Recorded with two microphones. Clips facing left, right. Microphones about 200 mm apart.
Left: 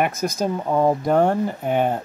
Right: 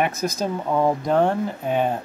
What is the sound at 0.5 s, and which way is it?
Speech, 15° left (ahead or behind).